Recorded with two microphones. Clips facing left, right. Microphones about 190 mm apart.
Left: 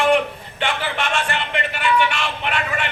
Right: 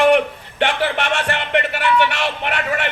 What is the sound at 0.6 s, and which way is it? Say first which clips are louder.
Music: right 5 dB; 65° right (ahead or behind).